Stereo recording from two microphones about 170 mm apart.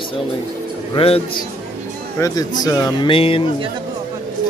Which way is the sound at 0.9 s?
35° left (ahead or behind).